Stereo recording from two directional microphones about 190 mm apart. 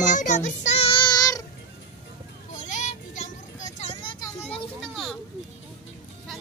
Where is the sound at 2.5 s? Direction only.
40° left (ahead or behind).